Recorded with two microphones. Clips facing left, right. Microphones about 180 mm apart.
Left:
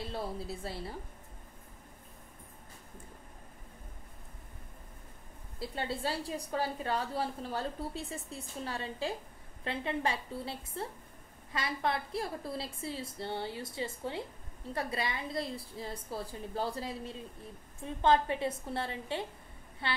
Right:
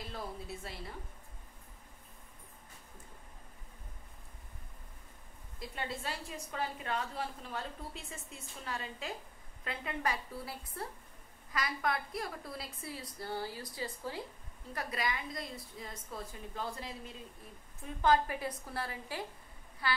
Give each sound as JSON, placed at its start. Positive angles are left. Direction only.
{"t": 0.0, "sound": "a woman's voice", "side_deg": 30}
{"t": 5.6, "sound": "a woman's voice", "side_deg": 30}